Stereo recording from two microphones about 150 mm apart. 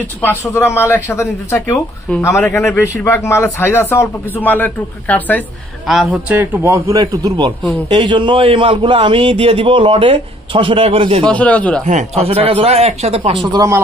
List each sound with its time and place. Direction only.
0.2 s a man's voice: 15° left (ahead or behind)
5.9 s a man's voice: centre (ahead or behind); by 11.2 s 35° right (ahead or behind)
11.2 s a man's voice: 10° left (ahead or behind)
11.8 s speech: 50° right (ahead or behind)
13.5 s speech: 25° right (ahead or behind)